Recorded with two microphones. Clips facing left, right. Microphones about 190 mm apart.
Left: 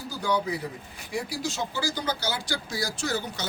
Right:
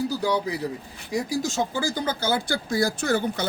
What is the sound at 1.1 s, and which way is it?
Speech, 45° right (ahead or behind).